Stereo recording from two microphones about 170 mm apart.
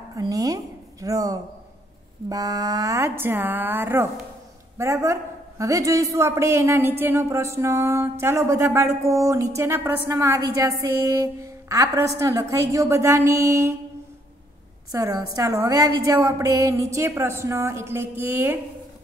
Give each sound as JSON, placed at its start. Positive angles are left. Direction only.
{"t": 0.1, "sound": "a woman's voice", "side_deg": -20}
{"t": 14.9, "sound": "a woman's voice", "side_deg": -20}